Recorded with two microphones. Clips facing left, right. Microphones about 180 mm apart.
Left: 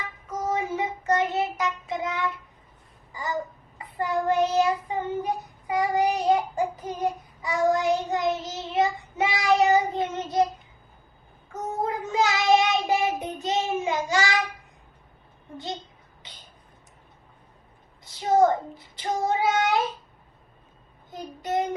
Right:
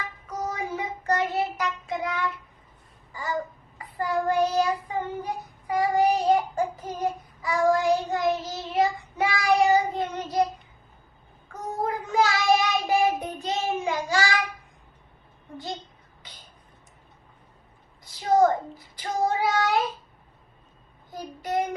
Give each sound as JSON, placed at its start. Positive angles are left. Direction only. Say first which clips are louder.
{"t": 0.5, "sound": "child singing", "louder": "left 4 dB", "side_deg": 25}
{"t": 3.1, "sound": "a sound", "louder": "even", "side_deg": 20}
{"t": 3.8, "sound": "child singing", "louder": "even", "side_deg": 25}
{"t": 11.8, "sound": "child singing", "louder": "right 1 dB", "side_deg": 20}
{"t": 18.0, "sound": "child singing", "louder": "even", "side_deg": 25}
{"t": 21.1, "sound": "child singing", "louder": "left 1 dB", "side_deg": 20}